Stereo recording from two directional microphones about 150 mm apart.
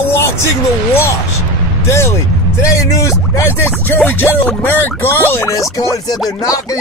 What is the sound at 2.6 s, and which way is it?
Speech, 20° left (ahead or behind).